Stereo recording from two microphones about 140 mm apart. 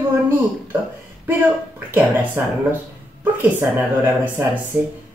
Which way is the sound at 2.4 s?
15° right (ahead or behind).